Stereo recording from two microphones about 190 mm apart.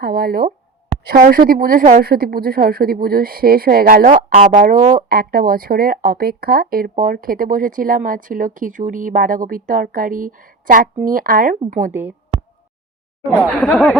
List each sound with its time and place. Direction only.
0.0 s speech: 55° right (ahead or behind)
13.4 s speech: 5° left (ahead or behind)